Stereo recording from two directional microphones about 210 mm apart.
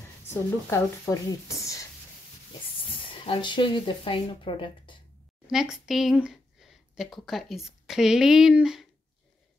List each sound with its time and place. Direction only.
0.3 s speech: 10° left (ahead or behind)
2.8 s speech: 25° left (ahead or behind)
5.5 s speech: centre (ahead or behind)